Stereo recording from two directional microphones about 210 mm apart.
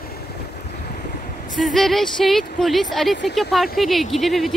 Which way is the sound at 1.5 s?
Centre (ahead or behind).